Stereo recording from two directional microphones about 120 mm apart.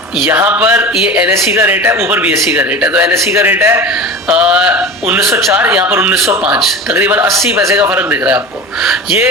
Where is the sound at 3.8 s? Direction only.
5° right (ahead or behind).